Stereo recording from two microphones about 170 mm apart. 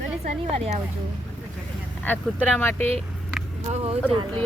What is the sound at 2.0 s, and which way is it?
Speech, 10° left (ahead or behind).